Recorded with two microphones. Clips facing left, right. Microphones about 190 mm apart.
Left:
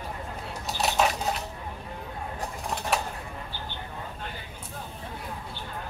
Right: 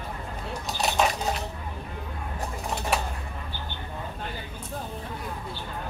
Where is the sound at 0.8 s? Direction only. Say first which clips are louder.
Even; centre (ahead or behind).